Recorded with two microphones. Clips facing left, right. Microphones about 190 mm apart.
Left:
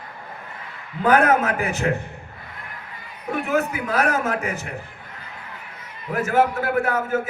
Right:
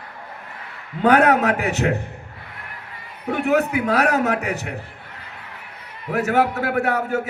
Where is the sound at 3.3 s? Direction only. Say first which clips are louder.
Right 4 dB; 70° right (ahead or behind).